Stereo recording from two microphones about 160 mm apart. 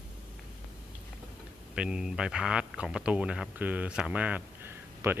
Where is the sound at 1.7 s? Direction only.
5° right (ahead or behind).